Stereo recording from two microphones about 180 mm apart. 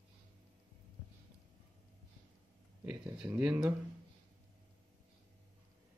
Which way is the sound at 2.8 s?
5° right (ahead or behind).